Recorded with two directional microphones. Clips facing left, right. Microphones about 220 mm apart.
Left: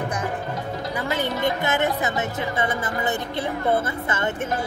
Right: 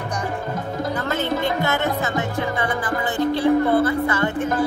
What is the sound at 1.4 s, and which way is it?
Speech, 20° left (ahead or behind).